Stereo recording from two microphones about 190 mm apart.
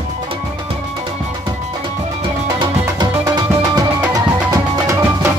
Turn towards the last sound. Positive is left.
turn(degrees=-15)  # may be behind; listen again after turning